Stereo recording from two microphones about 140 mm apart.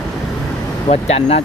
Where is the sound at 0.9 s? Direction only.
45° left (ahead or behind).